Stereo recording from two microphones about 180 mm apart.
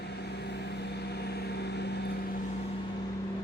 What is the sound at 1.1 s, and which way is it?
Vehicle, 65° left (ahead or behind).